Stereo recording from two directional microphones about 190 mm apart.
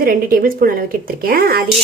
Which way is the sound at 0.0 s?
50° right (ahead or behind).